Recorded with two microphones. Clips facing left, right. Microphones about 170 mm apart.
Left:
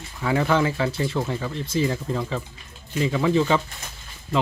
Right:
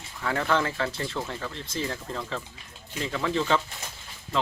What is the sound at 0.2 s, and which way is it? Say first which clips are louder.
Speech: left 5 dB; 10° left (ahead or behind).